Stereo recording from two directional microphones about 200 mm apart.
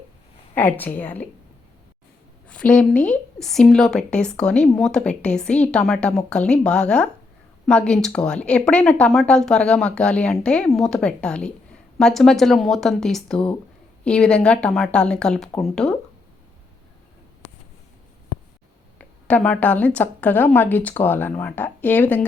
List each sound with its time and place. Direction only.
0.5 s a woman's voice: 10° left (ahead or behind)
2.5 s a woman's voice: 5° left (ahead or behind)
18.9 s a woman's voice: 5° left (ahead or behind)